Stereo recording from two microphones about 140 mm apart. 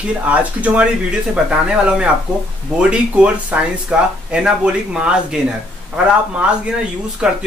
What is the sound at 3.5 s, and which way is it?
Speech, 10° right (ahead or behind).